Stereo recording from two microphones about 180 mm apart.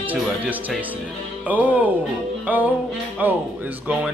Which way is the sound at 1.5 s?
10° right (ahead or behind).